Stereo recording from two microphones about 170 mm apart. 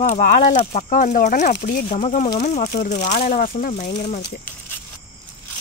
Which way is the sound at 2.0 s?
40° left (ahead or behind).